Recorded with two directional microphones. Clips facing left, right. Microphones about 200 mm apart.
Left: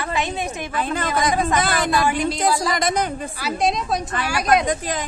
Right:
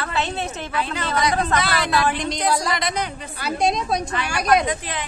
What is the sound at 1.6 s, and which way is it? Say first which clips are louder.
Speech: left 2 dB; 50° left (ahead or behind).